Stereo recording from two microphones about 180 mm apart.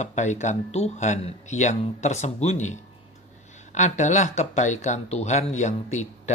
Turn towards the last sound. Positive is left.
turn(degrees=40)  # may be behind; listen again after turning